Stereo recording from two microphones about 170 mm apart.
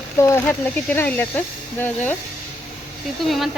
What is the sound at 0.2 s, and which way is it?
Speech, 15° left (ahead or behind).